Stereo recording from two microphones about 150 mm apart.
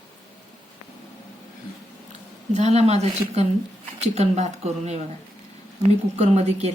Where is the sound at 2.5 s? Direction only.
45° right (ahead or behind).